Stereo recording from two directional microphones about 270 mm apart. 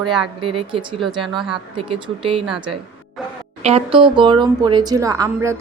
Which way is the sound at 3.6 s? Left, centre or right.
Right.